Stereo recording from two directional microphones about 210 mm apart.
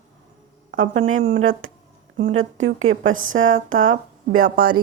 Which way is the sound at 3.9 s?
40° right (ahead or behind).